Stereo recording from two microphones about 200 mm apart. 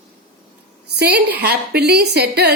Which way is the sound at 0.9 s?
55° right (ahead or behind).